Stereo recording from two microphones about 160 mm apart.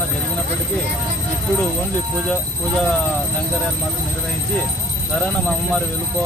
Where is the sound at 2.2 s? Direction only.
5° left (ahead or behind).